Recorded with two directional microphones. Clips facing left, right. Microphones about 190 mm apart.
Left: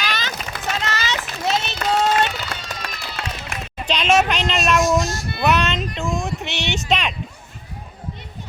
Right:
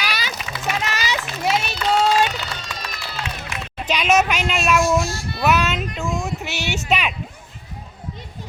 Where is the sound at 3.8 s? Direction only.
5° right (ahead or behind).